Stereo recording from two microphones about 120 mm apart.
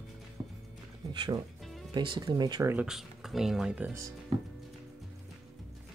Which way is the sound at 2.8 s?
5° right (ahead or behind).